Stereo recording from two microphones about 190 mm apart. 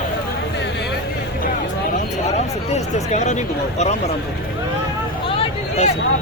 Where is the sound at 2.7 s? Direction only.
35° left (ahead or behind).